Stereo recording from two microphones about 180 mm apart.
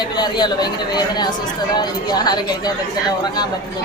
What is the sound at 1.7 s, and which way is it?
Speech, 25° left (ahead or behind).